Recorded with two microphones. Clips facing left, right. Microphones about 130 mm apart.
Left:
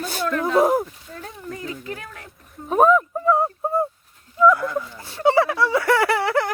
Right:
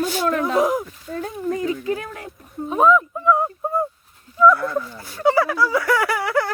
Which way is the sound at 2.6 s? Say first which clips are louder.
Even; 50° left (ahead or behind).